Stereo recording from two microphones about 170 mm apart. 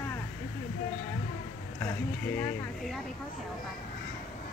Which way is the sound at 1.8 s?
15° left (ahead or behind).